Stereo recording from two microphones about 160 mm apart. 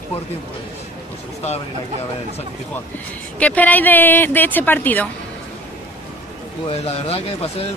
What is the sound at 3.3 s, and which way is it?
Speech, 10° left (ahead or behind).